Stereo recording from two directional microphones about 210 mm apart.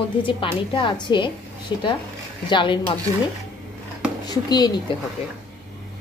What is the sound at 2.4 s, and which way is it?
Speech, 20° left (ahead or behind).